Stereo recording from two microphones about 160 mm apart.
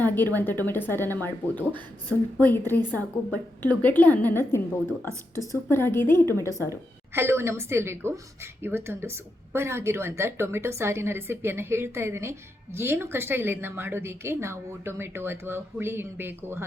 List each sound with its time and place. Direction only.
0.0 s speech: 10° left (ahead or behind)
5.6 s speech: 15° left (ahead or behind)
6.6 s speech: 15° right (ahead or behind)